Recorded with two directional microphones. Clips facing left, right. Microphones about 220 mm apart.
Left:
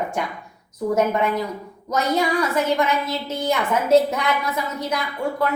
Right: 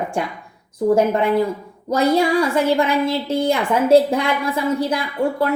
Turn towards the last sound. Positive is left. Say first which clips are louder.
# right 4 dB
turn(degrees=-30)  # may be behind; listen again after turning